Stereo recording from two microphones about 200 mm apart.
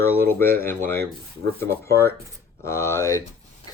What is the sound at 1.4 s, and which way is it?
Speech, 60° right (ahead or behind).